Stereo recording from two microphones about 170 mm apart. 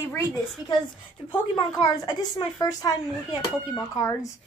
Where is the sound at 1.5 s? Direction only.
25° left (ahead or behind).